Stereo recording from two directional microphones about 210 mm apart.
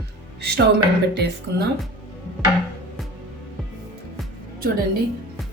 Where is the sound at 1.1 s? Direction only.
55° right (ahead or behind).